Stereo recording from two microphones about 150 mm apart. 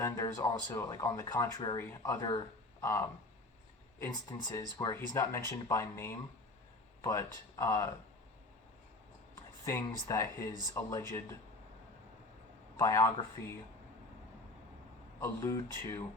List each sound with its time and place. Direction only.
0.0 s speech: 20° left (ahead or behind)
9.8 s speech: 20° left (ahead or behind)
12.8 s speech: 20° left (ahead or behind)
15.2 s speech: 20° left (ahead or behind)